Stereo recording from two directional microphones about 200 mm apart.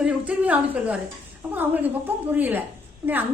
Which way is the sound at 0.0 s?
5° right (ahead or behind).